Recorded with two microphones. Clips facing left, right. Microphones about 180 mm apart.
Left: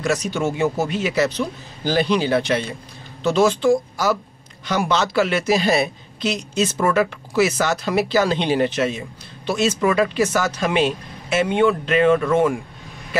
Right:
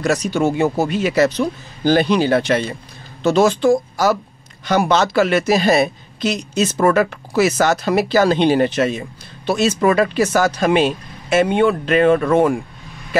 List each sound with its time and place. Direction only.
0.0 s speech: 40° right (ahead or behind)
1.9 s speech: 55° right (ahead or behind)
3.2 s speech: 40° right (ahead or behind)
4.6 s speech: 60° right (ahead or behind)
5.1 s speech: 45° right (ahead or behind)
9.8 s speech: 55° right (ahead or behind)
10.1 s speech: 40° right (ahead or behind)